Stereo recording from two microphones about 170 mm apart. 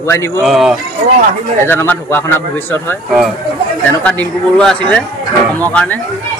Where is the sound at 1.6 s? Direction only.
10° left (ahead or behind).